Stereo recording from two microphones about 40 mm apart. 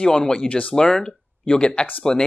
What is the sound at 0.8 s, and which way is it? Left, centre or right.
Speech, centre.